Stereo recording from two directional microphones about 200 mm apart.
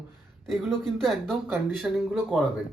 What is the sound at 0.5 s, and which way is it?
Speech, centre (ahead or behind).